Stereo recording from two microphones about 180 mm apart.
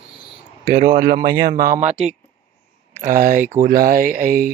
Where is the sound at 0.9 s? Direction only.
45° right (ahead or behind).